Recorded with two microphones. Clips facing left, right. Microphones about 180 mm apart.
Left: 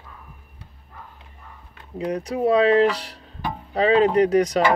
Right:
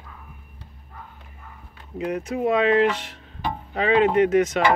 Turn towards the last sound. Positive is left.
turn(degrees=35)  # may be behind; listen again after turning